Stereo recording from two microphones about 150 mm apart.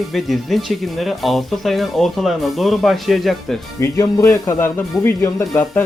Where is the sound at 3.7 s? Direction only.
20° left (ahead or behind).